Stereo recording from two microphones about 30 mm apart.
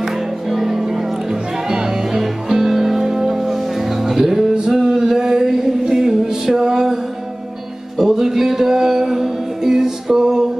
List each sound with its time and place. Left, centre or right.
0.0 s music: centre
4.7 s male singing: centre
5.9 s music: centre
8.0 s music: centre